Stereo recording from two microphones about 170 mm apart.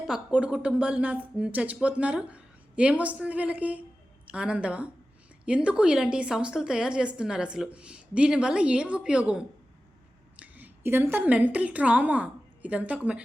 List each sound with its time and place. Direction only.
0.0 s a woman's voice: 5° right (ahead or behind)